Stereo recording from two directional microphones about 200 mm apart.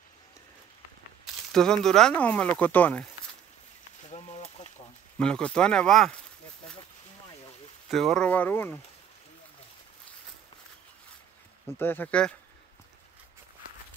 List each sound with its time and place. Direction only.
1.2 s speech: 5° left (ahead or behind)
4.1 s a sound: 30° left (ahead or behind)
5.2 s speech: 5° left (ahead or behind)
7.9 s speech: centre (ahead or behind)
11.8 s speech: 10° left (ahead or behind)